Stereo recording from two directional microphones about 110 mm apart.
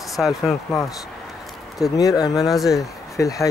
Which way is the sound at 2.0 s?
35° left (ahead or behind).